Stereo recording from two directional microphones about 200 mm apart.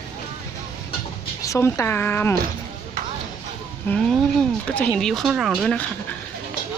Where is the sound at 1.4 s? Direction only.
15° left (ahead or behind).